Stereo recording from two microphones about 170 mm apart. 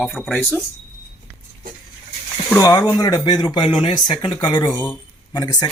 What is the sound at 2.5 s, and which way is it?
Speech, 15° left (ahead or behind).